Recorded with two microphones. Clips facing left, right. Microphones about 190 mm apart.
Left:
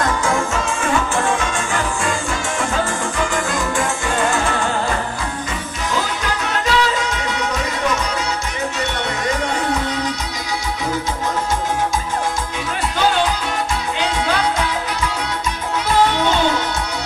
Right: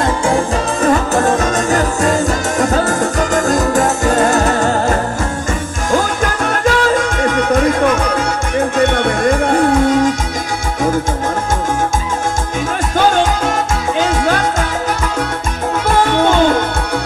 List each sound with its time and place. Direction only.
0.8 s music: 40° right (ahead or behind)
12.9 s music: 45° right (ahead or behind)
15.9 s music: 50° right (ahead or behind)